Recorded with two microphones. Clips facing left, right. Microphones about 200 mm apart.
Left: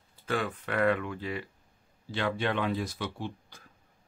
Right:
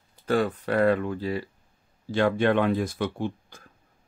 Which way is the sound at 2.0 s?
45° right (ahead or behind).